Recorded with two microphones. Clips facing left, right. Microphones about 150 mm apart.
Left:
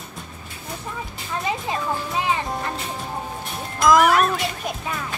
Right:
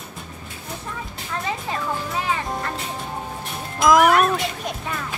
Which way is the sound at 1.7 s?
15° left (ahead or behind).